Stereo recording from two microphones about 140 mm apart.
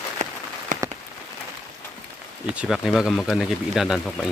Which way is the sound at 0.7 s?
65° right (ahead or behind).